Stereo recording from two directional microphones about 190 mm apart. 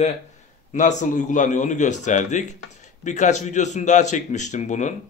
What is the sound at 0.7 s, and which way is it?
Speech, 40° left (ahead or behind).